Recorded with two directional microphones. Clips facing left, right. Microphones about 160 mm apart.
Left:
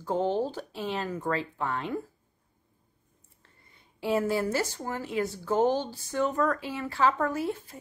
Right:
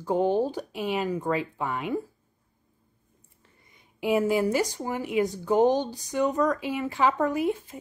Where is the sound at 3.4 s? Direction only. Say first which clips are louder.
Right 1 dB; 15° right (ahead or behind).